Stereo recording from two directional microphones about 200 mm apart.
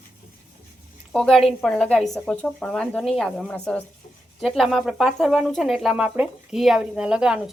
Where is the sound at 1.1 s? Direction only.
Centre (ahead or behind).